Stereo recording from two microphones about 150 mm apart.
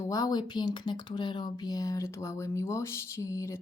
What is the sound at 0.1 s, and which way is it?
Speech, 25° left (ahead or behind).